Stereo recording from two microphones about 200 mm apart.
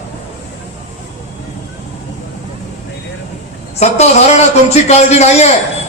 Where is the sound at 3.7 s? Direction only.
35° left (ahead or behind).